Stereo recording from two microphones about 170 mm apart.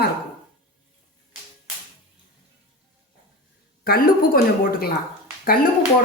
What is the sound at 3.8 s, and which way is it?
Speech, 60° left (ahead or behind).